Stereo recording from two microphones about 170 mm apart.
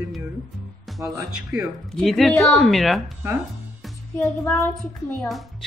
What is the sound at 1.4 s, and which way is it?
A woman's voice, 5° right (ahead or behind).